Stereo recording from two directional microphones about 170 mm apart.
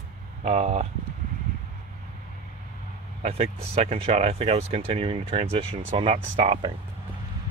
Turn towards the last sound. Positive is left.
turn(degrees=-30)  # may be behind; listen again after turning